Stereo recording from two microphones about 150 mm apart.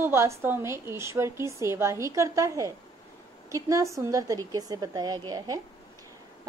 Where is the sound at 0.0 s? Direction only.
20° right (ahead or behind).